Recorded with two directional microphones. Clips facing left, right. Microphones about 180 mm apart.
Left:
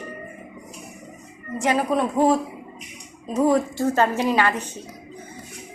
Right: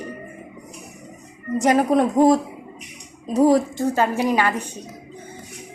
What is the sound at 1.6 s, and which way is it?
Speech, 40° right (ahead or behind).